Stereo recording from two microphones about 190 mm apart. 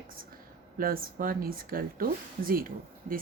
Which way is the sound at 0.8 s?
50° right (ahead or behind).